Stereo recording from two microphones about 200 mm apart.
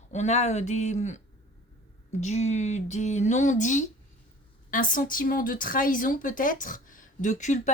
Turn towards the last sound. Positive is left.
turn(degrees=35)  # may be behind; listen again after turning